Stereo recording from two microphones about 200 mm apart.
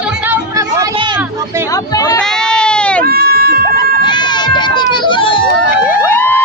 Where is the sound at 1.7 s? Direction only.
15° left (ahead or behind).